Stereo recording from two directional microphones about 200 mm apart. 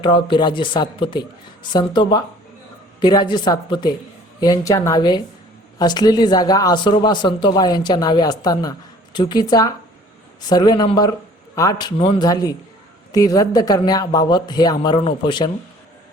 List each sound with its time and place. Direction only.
0.0 s speech: 25° left (ahead or behind)